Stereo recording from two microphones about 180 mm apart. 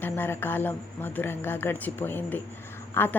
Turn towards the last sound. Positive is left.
turn(degrees=10)  # may be behind; listen again after turning